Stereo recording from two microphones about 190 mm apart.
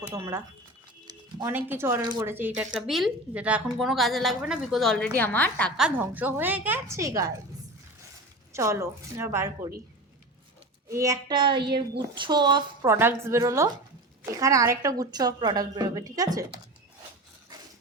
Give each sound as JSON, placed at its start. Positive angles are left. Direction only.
{"t": 0.1, "sound": "a woman's voice", "side_deg": -15}
{"t": 1.0, "sound": "a sound", "side_deg": -20}
{"t": 1.5, "sound": "a woman's voice", "side_deg": -10}
{"t": 2.6, "sound": "a woman's voice", "side_deg": 0}
{"t": 6.0, "sound": "a woman's voice", "side_deg": -10}
{"t": 8.5, "sound": "a woman's voice", "side_deg": -15}
{"t": 10.8, "sound": "a woman's voice", "side_deg": -15}